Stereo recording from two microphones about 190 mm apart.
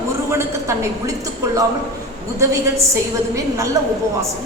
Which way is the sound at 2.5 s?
15° right (ahead or behind).